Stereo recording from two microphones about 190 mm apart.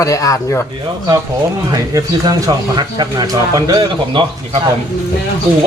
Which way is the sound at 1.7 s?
20° right (ahead or behind).